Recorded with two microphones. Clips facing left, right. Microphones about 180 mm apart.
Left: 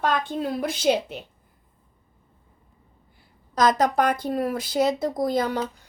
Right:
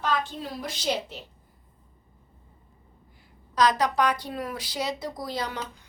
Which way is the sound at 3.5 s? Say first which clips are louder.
Left 3 dB; 45° left (ahead or behind).